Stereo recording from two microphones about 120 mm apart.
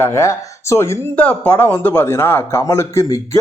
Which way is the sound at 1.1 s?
10° left (ahead or behind).